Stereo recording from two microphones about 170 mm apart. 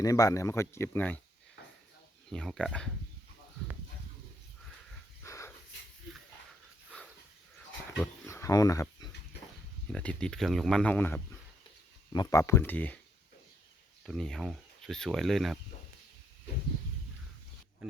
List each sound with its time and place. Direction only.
0.0 s speech: 20° left (ahead or behind)
2.3 s speech: 5° left (ahead or behind)
5.2 s dog: 15° left (ahead or behind)
7.9 s dog: 15° left (ahead or behind)
9.9 s speech: 5° left (ahead or behind)
12.1 s speech: 20° left (ahead or behind)
14.0 s speech: 5° left (ahead or behind)